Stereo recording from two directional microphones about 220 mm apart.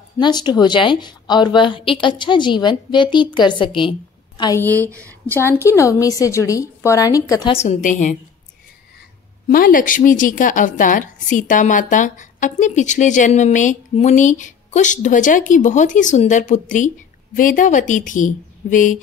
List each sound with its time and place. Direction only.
0.2 s a woman's voice: 20° left (ahead or behind)
7.5 s a woman's voice: 30° left (ahead or behind)
9.5 s a woman's voice: 40° left (ahead or behind)